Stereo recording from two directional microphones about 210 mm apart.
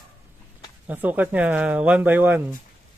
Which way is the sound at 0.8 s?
10° right (ahead or behind).